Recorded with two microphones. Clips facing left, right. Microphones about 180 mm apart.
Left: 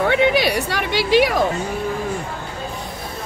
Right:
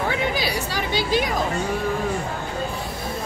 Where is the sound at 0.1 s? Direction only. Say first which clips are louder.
Left 7 dB; 65° left (ahead or behind).